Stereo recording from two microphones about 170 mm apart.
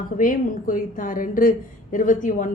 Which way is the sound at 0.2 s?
55° left (ahead or behind).